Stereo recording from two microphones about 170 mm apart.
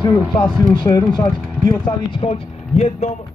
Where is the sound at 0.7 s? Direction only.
25° left (ahead or behind).